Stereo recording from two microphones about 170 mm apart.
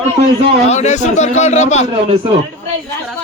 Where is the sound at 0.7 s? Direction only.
40° left (ahead or behind).